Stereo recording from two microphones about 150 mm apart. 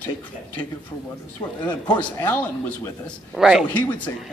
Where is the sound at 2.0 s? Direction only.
10° left (ahead or behind).